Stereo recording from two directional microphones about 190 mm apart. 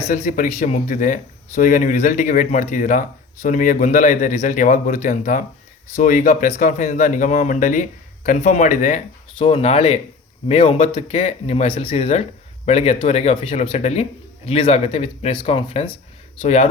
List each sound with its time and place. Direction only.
0.1 s speech: 45° left (ahead or behind)
9.4 s speech: 30° left (ahead or behind)